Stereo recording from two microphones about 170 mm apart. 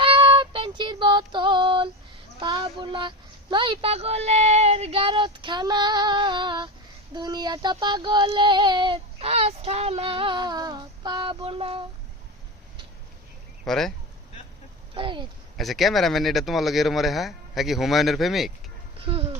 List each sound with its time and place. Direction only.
0.0 s female singing: 30° right (ahead or behind)
2.4 s speech: 30° right (ahead or behind)
7.1 s child singing: 25° right (ahead or behind)
13.7 s speech: centre (ahead or behind)
14.9 s speech: 30° right (ahead or behind)
15.5 s speech: centre (ahead or behind)
18.9 s a sound: 35° right (ahead or behind)